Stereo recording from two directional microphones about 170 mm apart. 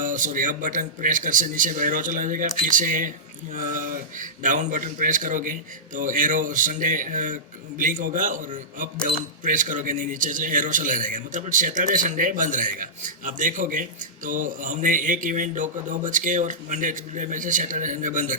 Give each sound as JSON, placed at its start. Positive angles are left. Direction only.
{"t": 0.0, "sound": "speech", "side_deg": -50}